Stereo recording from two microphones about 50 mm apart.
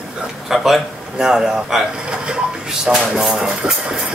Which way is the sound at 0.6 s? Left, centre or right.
Centre.